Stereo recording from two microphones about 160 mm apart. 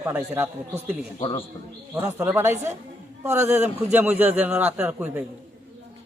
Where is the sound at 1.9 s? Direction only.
15° right (ahead or behind).